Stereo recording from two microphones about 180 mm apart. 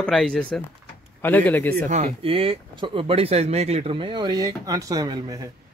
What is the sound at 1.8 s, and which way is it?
Speech, 40° right (ahead or behind).